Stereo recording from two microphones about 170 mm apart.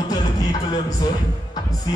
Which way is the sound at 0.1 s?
20° left (ahead or behind).